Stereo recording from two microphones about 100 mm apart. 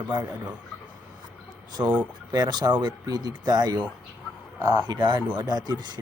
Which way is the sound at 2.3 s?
45° right (ahead or behind).